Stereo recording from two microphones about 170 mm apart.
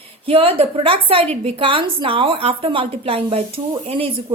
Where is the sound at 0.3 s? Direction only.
35° right (ahead or behind).